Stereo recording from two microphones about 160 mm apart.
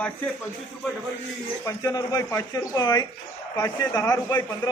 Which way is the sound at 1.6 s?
20° left (ahead or behind).